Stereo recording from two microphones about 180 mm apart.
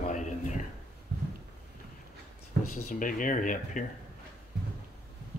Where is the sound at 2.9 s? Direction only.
45° left (ahead or behind).